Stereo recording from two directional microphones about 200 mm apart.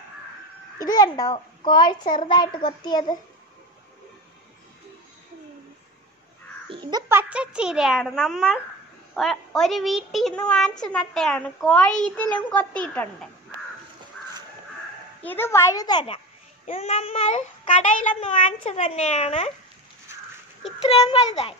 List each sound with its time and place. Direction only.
0.7 s a child's voice: 20° left (ahead or behind)
6.7 s a child's voice: 20° right (ahead or behind); by 13.3 s 5° left (ahead or behind)
15.2 s a child's voice: 10° left (ahead or behind); by 19.5 s 35° left (ahead or behind)
20.8 s a child's voice: 30° left (ahead or behind)